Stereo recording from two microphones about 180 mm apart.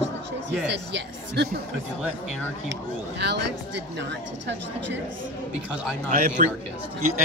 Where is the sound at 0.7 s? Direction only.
70° right (ahead or behind).